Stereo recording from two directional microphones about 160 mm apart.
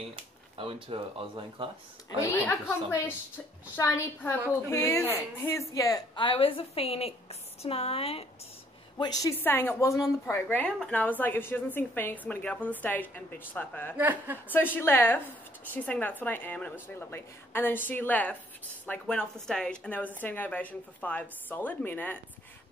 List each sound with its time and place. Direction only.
0.6 s speech: 35° right (ahead or behind)
2.3 s a woman's voice: 10° left (ahead or behind); by 8.3 s 40° left (ahead or behind)
8.9 s a woman's voice: 25° left (ahead or behind)
9.4 s a woman's voice: 15° left (ahead or behind)
13.9 s a woman's voice: 10° right (ahead or behind)
14.5 s a woman's voice: 10° left (ahead or behind)